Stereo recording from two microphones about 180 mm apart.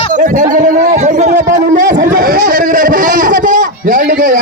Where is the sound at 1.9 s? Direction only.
50° right (ahead or behind).